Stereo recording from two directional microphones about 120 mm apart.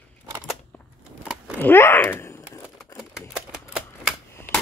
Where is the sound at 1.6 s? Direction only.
20° left (ahead or behind).